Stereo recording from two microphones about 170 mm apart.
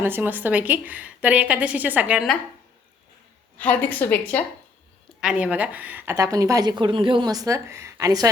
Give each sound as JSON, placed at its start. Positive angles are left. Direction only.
{"t": 0.0, "sound": "a woman's voice", "side_deg": -10}
{"t": 3.6, "sound": "a woman's voice", "side_deg": 10}
{"t": 5.2, "sound": "a woman's voice", "side_deg": -5}